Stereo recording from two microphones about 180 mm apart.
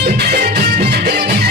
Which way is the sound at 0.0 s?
65° right (ahead or behind).